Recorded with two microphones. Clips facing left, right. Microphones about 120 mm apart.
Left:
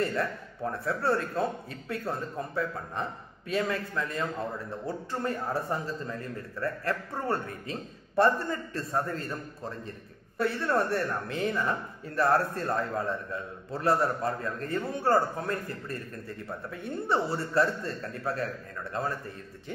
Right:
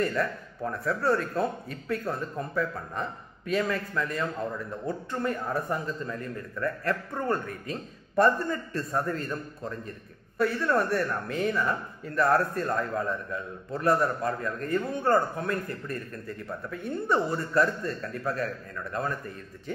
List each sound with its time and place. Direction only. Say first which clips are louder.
0.0 s a man's voice: right 2 dB; 30° left (ahead or behind)
10.4 s a man's voice: right 2 dB; 30° left (ahead or behind)
17.1 s a man's voice: right 2 dB; 30° left (ahead or behind)